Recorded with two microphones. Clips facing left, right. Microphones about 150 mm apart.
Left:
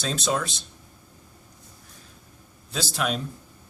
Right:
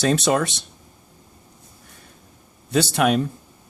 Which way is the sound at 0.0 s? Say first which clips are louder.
Right 8 dB; 65° right (ahead or behind).